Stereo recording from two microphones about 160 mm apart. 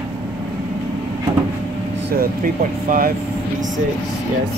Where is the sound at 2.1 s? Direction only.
60° right (ahead or behind).